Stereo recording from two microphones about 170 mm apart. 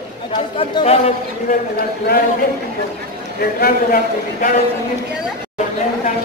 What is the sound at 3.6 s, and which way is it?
Speech, 60° left (ahead or behind).